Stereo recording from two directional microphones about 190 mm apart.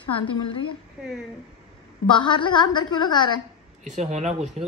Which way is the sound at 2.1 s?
25° left (ahead or behind).